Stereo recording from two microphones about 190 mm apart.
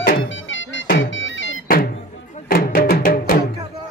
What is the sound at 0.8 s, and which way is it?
Music, 75° left (ahead or behind).